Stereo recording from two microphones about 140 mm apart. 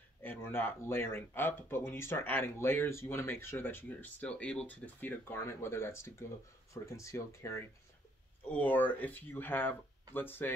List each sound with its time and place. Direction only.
0.2 s speech: 15° left (ahead or behind)